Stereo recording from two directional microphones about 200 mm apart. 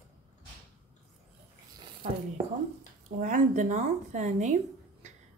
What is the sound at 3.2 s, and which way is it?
A woman's voice, 40° right (ahead or behind).